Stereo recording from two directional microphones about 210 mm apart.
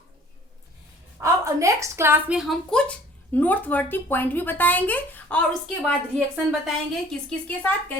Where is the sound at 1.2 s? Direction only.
15° right (ahead or behind); by 5.4 s 5° left (ahead or behind).